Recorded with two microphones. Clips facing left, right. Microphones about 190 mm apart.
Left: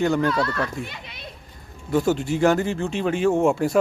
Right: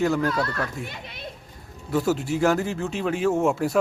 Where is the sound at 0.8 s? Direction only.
50° right (ahead or behind).